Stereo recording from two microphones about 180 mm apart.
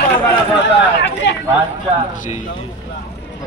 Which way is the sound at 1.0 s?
80° left.